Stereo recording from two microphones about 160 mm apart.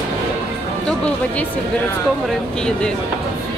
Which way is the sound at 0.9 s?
10° left (ahead or behind).